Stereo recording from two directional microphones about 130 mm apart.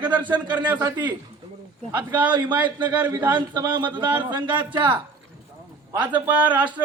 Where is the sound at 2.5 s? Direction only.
35° right (ahead or behind).